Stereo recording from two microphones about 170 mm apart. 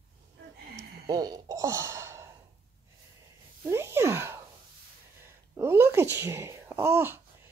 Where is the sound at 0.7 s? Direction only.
20° right (ahead or behind).